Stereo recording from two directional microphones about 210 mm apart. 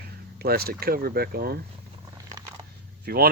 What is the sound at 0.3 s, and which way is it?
Speech, 45° right (ahead or behind).